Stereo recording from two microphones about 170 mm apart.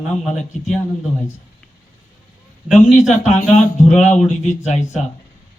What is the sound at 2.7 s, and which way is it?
Speech, 40° left (ahead or behind).